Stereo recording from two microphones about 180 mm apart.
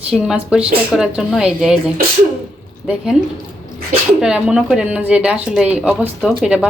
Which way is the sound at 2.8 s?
5° right (ahead or behind).